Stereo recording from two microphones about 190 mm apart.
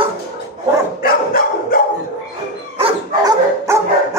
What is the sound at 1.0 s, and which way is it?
Dog, 50° left (ahead or behind).